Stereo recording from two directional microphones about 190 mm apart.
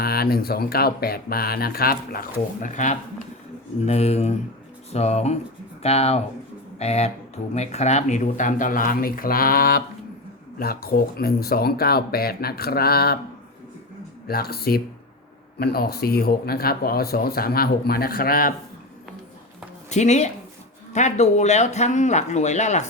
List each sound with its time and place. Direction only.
0.0 s speech: 55° left (ahead or behind)
14.3 s speech: 55° left (ahead or behind)
19.9 s speech: 35° left (ahead or behind)